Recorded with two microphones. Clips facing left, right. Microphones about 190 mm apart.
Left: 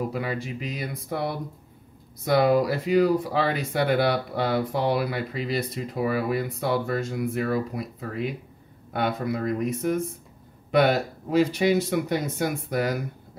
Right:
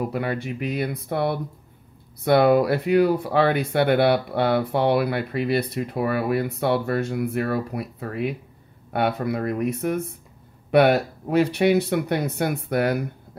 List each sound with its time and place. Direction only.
0.1 s speech: 60° right (ahead or behind)